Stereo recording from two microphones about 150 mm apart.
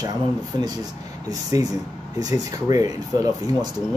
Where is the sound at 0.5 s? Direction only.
25° right (ahead or behind).